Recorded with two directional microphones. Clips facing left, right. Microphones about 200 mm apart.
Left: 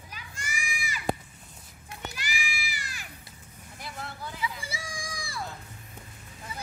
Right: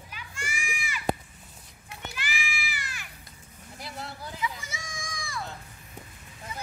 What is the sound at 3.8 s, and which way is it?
Vehicle, 35° right (ahead or behind).